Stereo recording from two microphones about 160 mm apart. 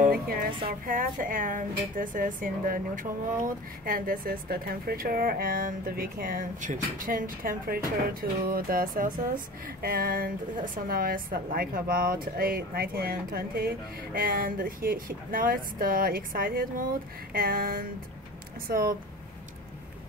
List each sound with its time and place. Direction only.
0.0 s music: 65° right (ahead or behind)
0.7 s speech: 60° right (ahead or behind)